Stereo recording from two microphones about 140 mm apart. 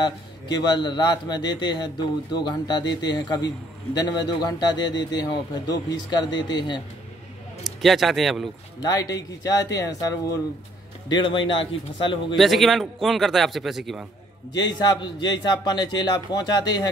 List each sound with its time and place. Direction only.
0.5 s a man's voice: 30° left (ahead or behind)
7.6 s speech: centre (ahead or behind)
8.8 s speech: 25° left (ahead or behind)
11.1 s a man's voice: 35° left (ahead or behind)
12.4 s a man's voice: centre (ahead or behind)
14.5 s a man's voice: 30° left (ahead or behind)